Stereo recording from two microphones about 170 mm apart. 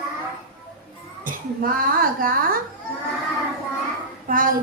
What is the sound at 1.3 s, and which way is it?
A woman's voice, 55° right (ahead or behind).